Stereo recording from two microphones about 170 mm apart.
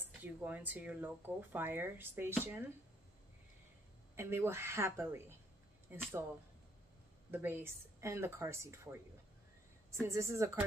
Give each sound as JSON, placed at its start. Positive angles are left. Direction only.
{"t": 0.2, "sound": "speech", "side_deg": -10}
{"t": 4.1, "sound": "speech", "side_deg": -15}
{"t": 7.2, "sound": "speech", "side_deg": -10}